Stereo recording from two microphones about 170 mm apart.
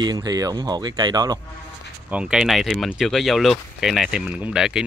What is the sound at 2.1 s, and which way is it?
Speech, 5° right (ahead or behind).